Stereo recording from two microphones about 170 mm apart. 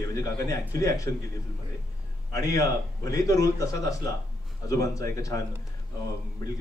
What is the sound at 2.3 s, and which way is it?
A man's voice, 20° left (ahead or behind).